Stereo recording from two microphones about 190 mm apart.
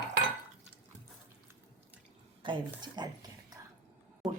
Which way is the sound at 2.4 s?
25° right (ahead or behind).